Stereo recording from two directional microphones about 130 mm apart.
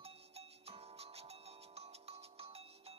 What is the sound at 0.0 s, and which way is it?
Music, 50° right (ahead or behind).